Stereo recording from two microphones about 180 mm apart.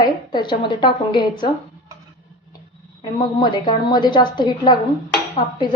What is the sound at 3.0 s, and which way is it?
A woman's voice, 25° left (ahead or behind).